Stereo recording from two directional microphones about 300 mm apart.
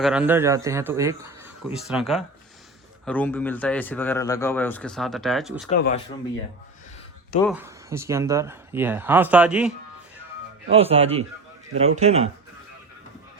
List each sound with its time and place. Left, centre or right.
0.0 s speech: centre
5.6 s speech: left
7.4 s speech: centre
10.7 s speech: centre